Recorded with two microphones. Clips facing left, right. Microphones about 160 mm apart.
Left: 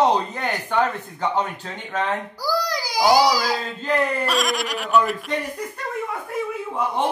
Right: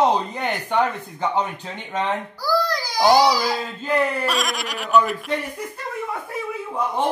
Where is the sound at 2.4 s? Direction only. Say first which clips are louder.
Right 4 dB; 10° left (ahead or behind).